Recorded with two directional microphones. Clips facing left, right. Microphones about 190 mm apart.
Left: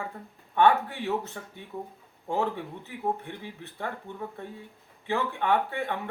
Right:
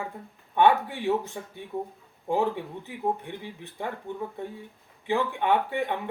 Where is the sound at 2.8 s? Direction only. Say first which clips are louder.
Right 1 dB; 15° right (ahead or behind).